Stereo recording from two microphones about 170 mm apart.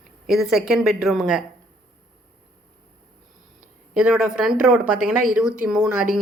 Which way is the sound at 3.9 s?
5° right (ahead or behind).